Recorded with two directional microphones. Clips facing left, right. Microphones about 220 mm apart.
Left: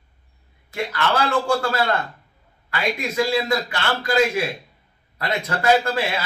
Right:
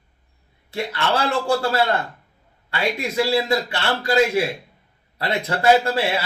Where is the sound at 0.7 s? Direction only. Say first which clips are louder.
Even; 30° right (ahead or behind).